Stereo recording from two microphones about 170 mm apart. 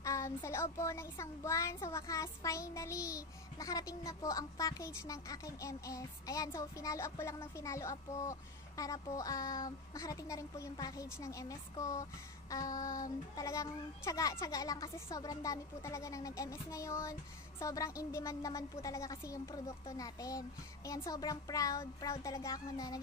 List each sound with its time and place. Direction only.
0.0 s speech: 15° left (ahead or behind)